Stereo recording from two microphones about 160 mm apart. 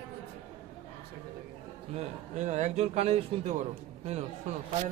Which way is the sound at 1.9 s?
45° right (ahead or behind).